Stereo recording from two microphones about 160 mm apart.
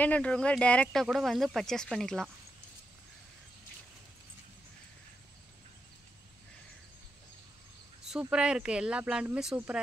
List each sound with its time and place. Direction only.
0.0 s speech: 10° left (ahead or behind)
8.1 s speech: 5° right (ahead or behind)